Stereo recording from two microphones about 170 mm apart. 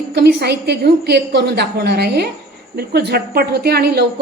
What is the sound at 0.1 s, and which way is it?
A woman's voice, 75° right (ahead or behind).